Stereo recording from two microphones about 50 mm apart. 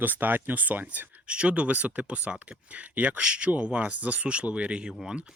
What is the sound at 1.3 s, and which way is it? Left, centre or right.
Speech, right.